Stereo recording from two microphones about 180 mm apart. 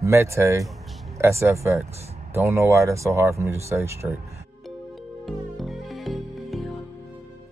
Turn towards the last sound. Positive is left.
turn(degrees=0)  # may be behind; listen again after turning